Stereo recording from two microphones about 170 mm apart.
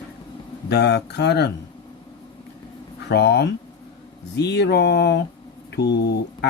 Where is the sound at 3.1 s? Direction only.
75° left (ahead or behind).